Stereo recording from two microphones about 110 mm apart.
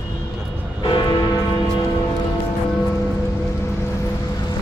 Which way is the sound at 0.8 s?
45° left (ahead or behind).